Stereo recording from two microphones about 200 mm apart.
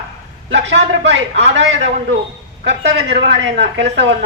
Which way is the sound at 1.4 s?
65° right (ahead or behind).